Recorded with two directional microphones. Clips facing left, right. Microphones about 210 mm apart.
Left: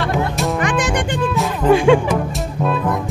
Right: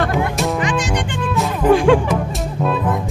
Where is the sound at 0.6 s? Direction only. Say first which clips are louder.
Left 1 dB; 55° left (ahead or behind).